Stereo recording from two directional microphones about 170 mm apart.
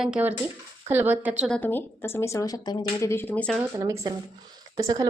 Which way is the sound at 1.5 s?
10° left (ahead or behind).